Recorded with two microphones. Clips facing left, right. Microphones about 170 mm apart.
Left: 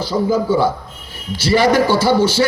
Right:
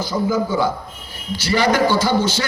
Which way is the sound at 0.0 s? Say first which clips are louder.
Left 3 dB; 30° left (ahead or behind).